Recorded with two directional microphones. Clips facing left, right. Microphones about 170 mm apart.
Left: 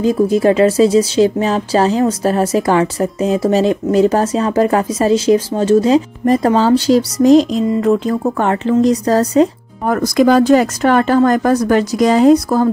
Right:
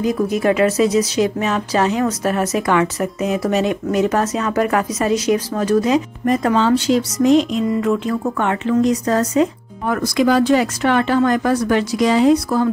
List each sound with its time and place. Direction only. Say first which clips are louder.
0.0 s speech: left 5 dB; 30° left (ahead or behind)
7.6 s speech: left 4 dB; 25° left (ahead or behind)
7.9 s speech: left 4 dB; 35° left (ahead or behind)